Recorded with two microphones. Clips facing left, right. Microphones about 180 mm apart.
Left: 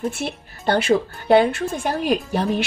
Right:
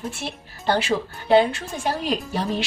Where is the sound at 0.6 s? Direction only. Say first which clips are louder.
Left 4 dB; 55° left (ahead or behind).